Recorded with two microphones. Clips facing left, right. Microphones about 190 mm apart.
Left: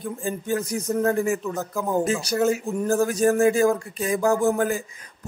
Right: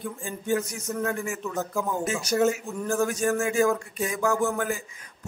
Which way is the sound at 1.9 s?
35° left (ahead or behind).